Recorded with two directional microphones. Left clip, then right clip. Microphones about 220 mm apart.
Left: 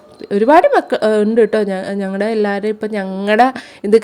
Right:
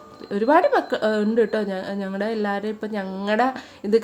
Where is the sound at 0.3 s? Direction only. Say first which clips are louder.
Left 8 dB; 35° left (ahead or behind).